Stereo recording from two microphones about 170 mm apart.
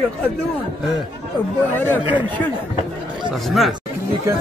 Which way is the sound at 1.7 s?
10° left (ahead or behind).